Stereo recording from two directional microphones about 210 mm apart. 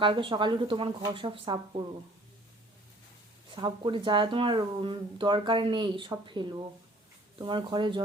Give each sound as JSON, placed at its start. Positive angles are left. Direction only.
{"t": 0.0, "sound": "speech", "side_deg": -25}
{"t": 3.5, "sound": "speech", "side_deg": -20}